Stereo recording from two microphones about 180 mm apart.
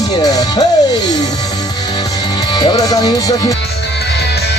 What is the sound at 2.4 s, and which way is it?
Speech, 25° left (ahead or behind).